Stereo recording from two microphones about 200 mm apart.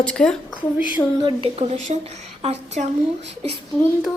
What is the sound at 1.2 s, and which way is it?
A woman's voice, 25° right (ahead or behind).